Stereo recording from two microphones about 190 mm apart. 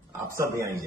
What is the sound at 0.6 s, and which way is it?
Speech, 15° right (ahead or behind).